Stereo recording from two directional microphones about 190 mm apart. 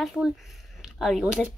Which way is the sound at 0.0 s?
Centre (ahead or behind).